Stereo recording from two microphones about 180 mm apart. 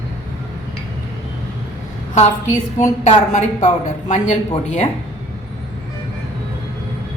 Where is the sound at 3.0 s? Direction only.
40° left (ahead or behind).